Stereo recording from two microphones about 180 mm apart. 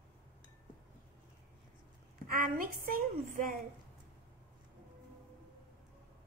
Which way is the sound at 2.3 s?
50° right (ahead or behind).